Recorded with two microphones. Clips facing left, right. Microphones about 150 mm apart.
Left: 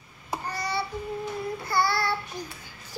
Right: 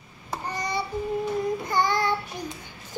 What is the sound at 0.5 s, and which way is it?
Child singing, 15° right (ahead or behind).